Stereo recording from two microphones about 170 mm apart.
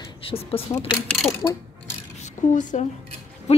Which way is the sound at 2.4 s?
50° left (ahead or behind).